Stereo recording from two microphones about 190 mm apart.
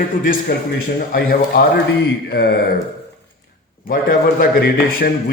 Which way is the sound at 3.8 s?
50° left (ahead or behind).